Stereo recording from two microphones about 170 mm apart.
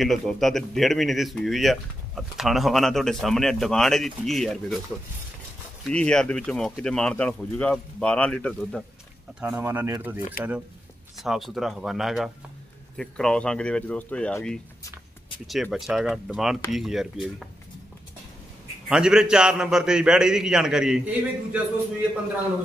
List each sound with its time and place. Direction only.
0.0 s speech: centre (ahead or behind)
5.9 s speech: 5° left (ahead or behind)
9.4 s speech: 15° right (ahead or behind)
18.9 s speech: 5° right (ahead or behind)